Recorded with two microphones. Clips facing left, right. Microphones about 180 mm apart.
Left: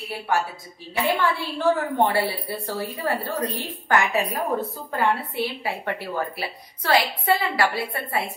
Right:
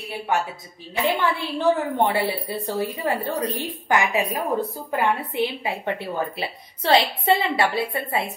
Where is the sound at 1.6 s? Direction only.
20° right (ahead or behind).